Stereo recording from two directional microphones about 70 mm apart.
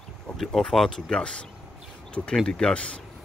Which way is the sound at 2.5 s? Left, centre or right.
Centre.